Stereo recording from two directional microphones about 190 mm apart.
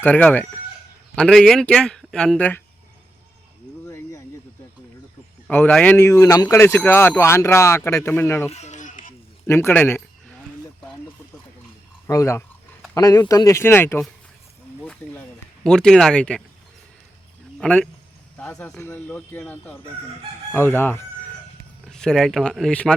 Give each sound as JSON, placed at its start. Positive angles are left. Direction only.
{"t": 0.0, "sound": "speech", "side_deg": 10}
{"t": 3.8, "sound": "a sound", "side_deg": 15}
{"t": 5.5, "sound": "speech", "side_deg": 10}
{"t": 8.4, "sound": "a sound", "side_deg": 35}
{"t": 9.5, "sound": "speech", "side_deg": 15}
{"t": 12.0, "sound": "speech", "side_deg": 15}
{"t": 15.0, "sound": "a sound", "side_deg": 5}
{"t": 15.6, "sound": "speech", "side_deg": 5}
{"t": 17.6, "sound": "speech", "side_deg": 5}